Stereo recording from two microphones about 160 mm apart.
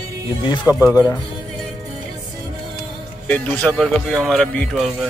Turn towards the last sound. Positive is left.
turn(degrees=0)  # may be behind; listen again after turning